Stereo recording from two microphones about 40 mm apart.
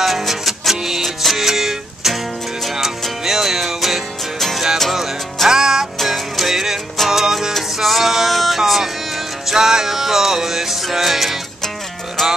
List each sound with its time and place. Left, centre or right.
0.0 s music: centre
3.3 s music: centre
5.9 s music: centre
12.2 s music: centre